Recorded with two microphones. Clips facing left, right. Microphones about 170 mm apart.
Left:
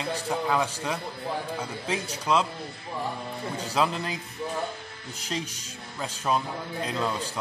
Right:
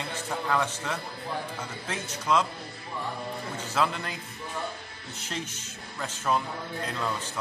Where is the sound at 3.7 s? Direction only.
15° left (ahead or behind).